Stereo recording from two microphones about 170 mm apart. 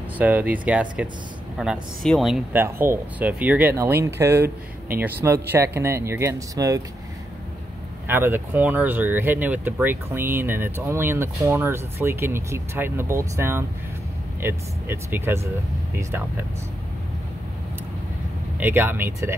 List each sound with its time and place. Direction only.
0.2 s speech: 10° right (ahead or behind)
2.5 s speech: 15° right (ahead or behind)
8.1 s speech: 10° right (ahead or behind)
18.6 s speech: 10° right (ahead or behind)